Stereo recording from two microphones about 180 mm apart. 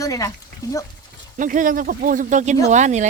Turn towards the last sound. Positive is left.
turn(degrees=-40)  # may be behind; listen again after turning